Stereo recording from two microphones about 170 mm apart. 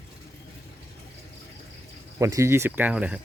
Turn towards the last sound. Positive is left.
turn(degrees=-5)  # may be behind; listen again after turning